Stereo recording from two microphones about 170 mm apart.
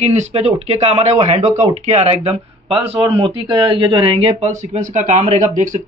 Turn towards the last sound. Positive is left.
turn(degrees=-45)  # may be behind; listen again after turning